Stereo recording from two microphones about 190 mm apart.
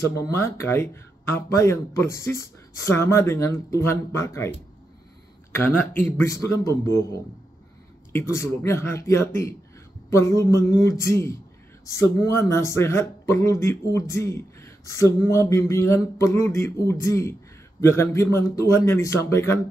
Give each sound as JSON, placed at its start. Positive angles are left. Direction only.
{"t": 0.0, "sound": "speech", "side_deg": 15}
{"t": 5.5, "sound": "speech", "side_deg": 10}
{"t": 8.1, "sound": "speech", "side_deg": 15}